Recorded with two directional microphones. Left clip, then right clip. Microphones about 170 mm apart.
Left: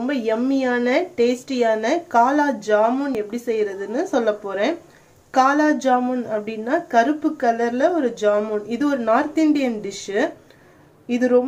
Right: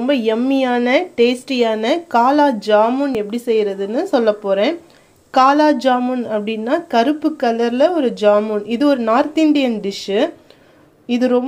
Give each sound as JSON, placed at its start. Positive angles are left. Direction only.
{"t": 0.0, "sound": "a woman's voice", "side_deg": -30}